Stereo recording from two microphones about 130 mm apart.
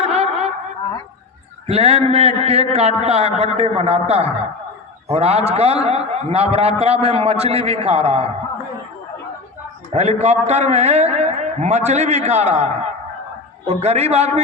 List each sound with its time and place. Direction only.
0.0 s a sound: 55° right (ahead or behind)
1.6 s a man's voice: 50° right (ahead or behind)
9.9 s a man's voice: 60° right (ahead or behind)